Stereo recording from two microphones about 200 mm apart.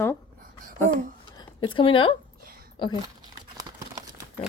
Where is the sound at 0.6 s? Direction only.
45° right (ahead or behind).